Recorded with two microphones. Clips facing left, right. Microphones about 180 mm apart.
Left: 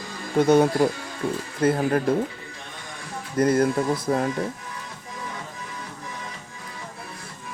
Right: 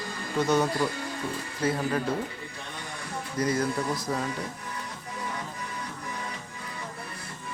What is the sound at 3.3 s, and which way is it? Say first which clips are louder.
Speech: left 8 dB; 55° left (ahead or behind).